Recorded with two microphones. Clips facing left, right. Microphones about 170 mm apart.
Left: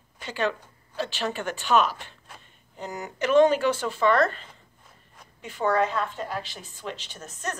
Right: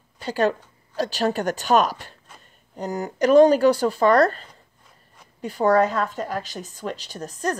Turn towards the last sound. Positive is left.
turn(degrees=-35)  # may be behind; listen again after turning